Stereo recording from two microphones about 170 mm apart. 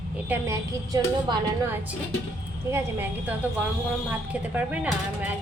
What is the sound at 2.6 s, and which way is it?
Speech, 15° right (ahead or behind).